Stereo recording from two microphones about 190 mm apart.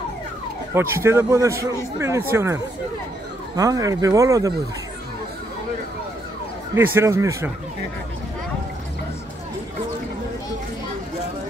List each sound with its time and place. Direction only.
0.7 s speech: 15° right (ahead or behind)
6.7 s speech: 15° right (ahead or behind)